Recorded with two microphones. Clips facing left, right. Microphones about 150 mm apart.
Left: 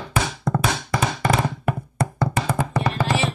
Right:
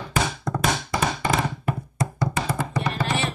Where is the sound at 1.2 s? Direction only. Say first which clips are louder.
Left 3 dB; 55° left (ahead or behind).